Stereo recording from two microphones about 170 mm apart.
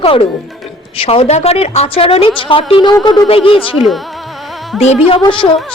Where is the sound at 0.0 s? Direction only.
35° left (ahead or behind).